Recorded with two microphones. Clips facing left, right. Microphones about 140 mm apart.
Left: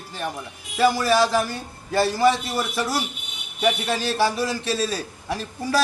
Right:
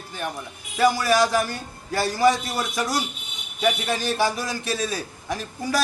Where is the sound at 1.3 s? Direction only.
Centre (ahead or behind).